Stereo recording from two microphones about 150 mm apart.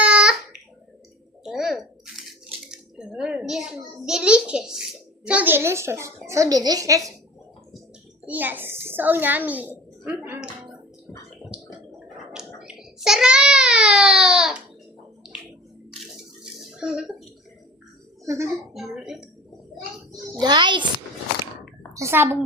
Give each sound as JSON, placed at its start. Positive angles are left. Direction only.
{"t": 0.0, "sound": "babbling", "side_deg": -5}
{"t": 1.5, "sound": "a sound", "side_deg": 0}
{"t": 2.6, "sound": "a child's voice", "side_deg": -5}
{"t": 8.3, "sound": "a child's voice", "side_deg": -10}
{"t": 11.5, "sound": "a sound", "side_deg": -5}
{"t": 12.0, "sound": "babbling", "side_deg": -5}
{"t": 16.4, "sound": "a sound", "side_deg": -5}
{"t": 18.3, "sound": "a child's voice", "side_deg": -20}
{"t": 18.7, "sound": "a woman's voice", "side_deg": 0}
{"t": 20.4, "sound": "a child's voice", "side_deg": -30}
{"t": 21.9, "sound": "a child's voice", "side_deg": -15}